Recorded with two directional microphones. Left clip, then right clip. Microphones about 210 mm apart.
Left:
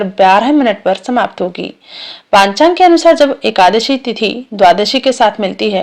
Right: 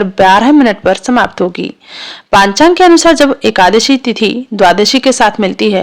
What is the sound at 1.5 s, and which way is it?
Speech, 90° right.